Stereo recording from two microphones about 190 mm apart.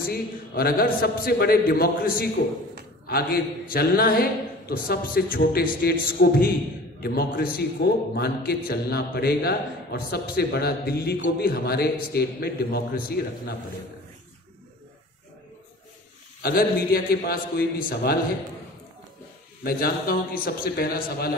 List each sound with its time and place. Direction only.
0.1 s a man's voice: 50° left (ahead or behind)
16.4 s a man's voice: 50° left (ahead or behind)
19.6 s a man's voice: 50° left (ahead or behind)